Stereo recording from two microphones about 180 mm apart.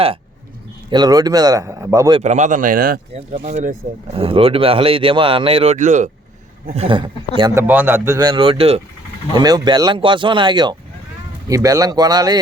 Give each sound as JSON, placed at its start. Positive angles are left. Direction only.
{"t": 0.9, "sound": "speech", "side_deg": -20}
{"t": 2.2, "sound": "speech", "side_deg": -40}
{"t": 3.1, "sound": "speech", "side_deg": -35}
{"t": 6.7, "sound": "speech", "side_deg": -30}
{"t": 7.5, "sound": "speech", "side_deg": -10}
{"t": 9.3, "sound": "speech", "side_deg": -25}